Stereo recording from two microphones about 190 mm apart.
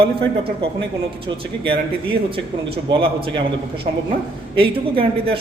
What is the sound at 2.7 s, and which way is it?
Speech, 25° right (ahead or behind).